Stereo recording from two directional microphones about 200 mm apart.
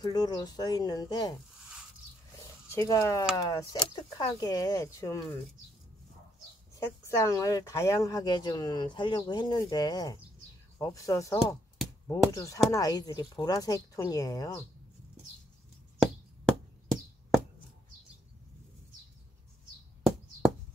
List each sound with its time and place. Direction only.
0.0 s speech: 20° left (ahead or behind)
2.7 s speech: 15° left (ahead or behind)
7.2 s speech: 15° left (ahead or behind)
16.0 s a sound: centre (ahead or behind)